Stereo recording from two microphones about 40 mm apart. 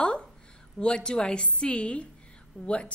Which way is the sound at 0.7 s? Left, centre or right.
Left.